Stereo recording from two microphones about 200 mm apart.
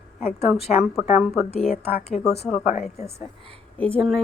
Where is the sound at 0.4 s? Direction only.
Centre (ahead or behind).